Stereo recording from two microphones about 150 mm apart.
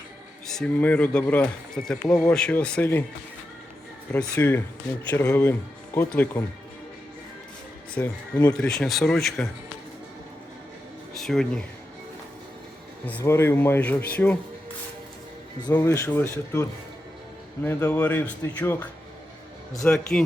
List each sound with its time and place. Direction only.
0.4 s speech: 5° left (ahead or behind)
4.1 s speech: 15° left (ahead or behind)
8.0 s speech: 15° left (ahead or behind)
11.1 s speech: 5° left (ahead or behind)
13.1 s speech: 15° left (ahead or behind)
15.6 s speech: 20° left (ahead or behind); by 20.2 s 5° left (ahead or behind)